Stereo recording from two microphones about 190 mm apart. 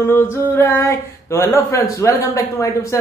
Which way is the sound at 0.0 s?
15° left (ahead or behind).